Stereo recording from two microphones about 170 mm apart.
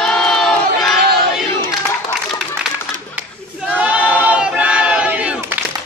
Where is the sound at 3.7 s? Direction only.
10° right (ahead or behind).